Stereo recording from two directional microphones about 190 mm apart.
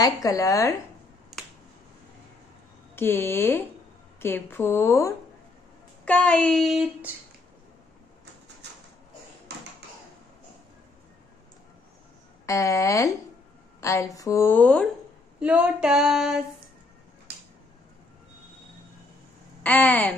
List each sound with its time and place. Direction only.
0.0 s a woman's voice: 15° left (ahead or behind)
3.0 s a woman's voice: 10° left (ahead or behind)
6.0 s female singing: 5° left (ahead or behind)
12.4 s a woman's voice: 15° left (ahead or behind)
15.3 s female singing: 5° right (ahead or behind)
19.6 s a woman's voice: 10° left (ahead or behind)